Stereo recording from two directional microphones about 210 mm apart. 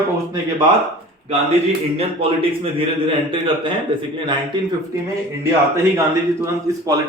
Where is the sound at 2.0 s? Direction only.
25° right (ahead or behind).